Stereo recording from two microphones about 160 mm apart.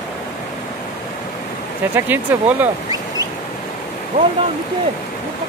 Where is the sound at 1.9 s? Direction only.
10° right (ahead or behind).